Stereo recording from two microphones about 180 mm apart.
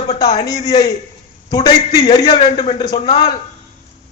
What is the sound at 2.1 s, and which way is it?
A man's voice, 25° left (ahead or behind).